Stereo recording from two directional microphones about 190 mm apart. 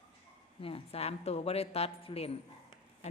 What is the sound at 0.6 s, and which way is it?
A woman's voice, 30° left (ahead or behind).